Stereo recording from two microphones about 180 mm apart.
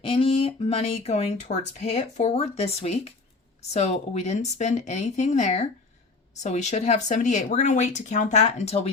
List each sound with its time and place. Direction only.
0.0 s speech: 30° left (ahead or behind)